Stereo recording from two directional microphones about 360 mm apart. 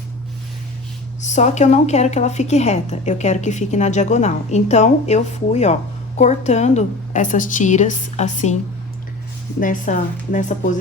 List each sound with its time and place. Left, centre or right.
1.2 s a woman's voice: centre
9.6 s a woman's voice: left